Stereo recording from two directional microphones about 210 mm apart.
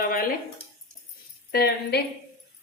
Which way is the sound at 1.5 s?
50° left (ahead or behind).